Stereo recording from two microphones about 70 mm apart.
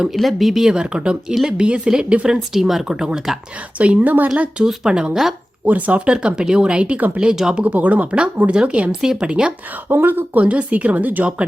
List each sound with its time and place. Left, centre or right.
0.0 s speech: centre
3.8 s a woman's voice: right
4.4 s speech: centre
5.6 s speech: right
7.6 s a woman's voice: right
9.9 s a woman's voice: right
10.4 s a woman's voice: centre